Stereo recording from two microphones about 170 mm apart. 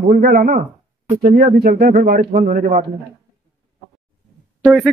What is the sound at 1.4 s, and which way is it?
Speech, 60° right (ahead or behind).